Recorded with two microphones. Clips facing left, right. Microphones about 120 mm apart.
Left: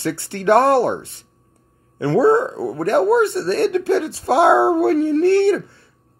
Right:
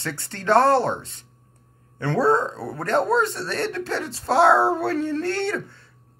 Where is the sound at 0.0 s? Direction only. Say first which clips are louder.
Left 8 dB; 15° left (ahead or behind).